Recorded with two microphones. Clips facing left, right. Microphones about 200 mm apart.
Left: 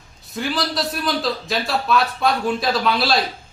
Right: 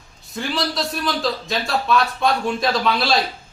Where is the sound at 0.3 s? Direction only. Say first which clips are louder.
Left 1 dB; centre (ahead or behind).